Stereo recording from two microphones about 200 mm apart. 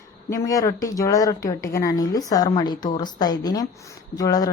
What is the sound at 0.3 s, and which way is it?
Speech, 15° left (ahead or behind).